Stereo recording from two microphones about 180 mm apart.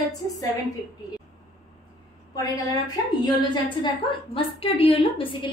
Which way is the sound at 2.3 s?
20° left (ahead or behind).